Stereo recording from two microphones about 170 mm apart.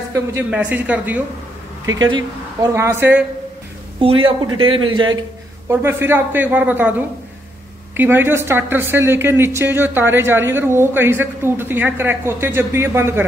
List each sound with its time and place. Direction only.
0.1 s a woman's voice: 15° right (ahead or behind)
2.0 s a woman's voice: 25° right (ahead or behind)
4.0 s speech: 30° right (ahead or behind)
5.7 s a woman's voice: 15° right (ahead or behind)